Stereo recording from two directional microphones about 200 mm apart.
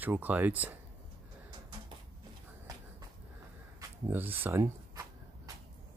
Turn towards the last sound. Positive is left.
turn(degrees=-10)  # may be behind; listen again after turning